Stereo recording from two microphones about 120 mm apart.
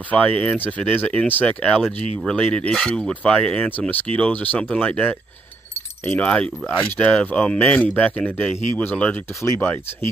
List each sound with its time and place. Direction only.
0.1 s speech: 10° left (ahead or behind)